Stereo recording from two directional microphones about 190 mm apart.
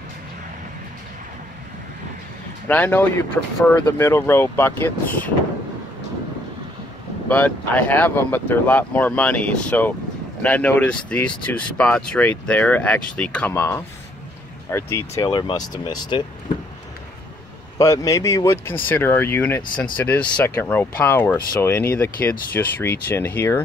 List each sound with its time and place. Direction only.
2.7 s speech: 10° left (ahead or behind)
7.2 s speech: 10° left (ahead or behind)
17.7 s speech: 20° left (ahead or behind)